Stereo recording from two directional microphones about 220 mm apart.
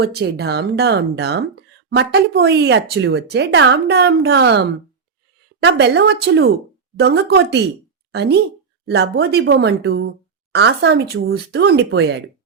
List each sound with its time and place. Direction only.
0.0 s speech: 45° right (ahead or behind)